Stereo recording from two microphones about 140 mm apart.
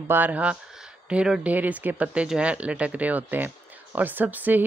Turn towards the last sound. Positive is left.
turn(degrees=-10)  # may be behind; listen again after turning